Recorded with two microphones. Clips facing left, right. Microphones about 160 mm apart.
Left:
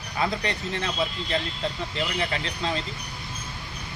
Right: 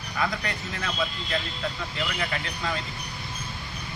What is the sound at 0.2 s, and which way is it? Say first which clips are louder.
Speech: left 2 dB; 25° left (ahead or behind).